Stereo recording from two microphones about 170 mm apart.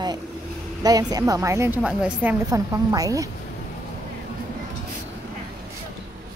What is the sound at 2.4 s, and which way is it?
Speech, 20° right (ahead or behind).